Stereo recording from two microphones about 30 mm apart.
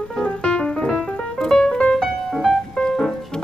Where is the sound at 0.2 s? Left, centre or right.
Left.